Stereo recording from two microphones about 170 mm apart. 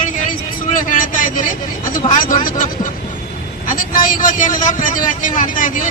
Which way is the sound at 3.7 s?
55° left (ahead or behind).